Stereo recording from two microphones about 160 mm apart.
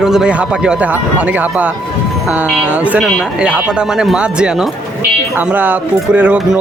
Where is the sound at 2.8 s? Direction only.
10° right (ahead or behind).